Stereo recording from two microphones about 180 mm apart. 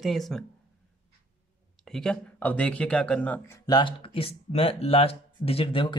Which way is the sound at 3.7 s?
25° left (ahead or behind).